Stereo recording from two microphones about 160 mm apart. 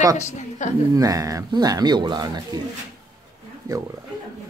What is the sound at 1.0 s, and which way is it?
Speech, 20° right (ahead or behind).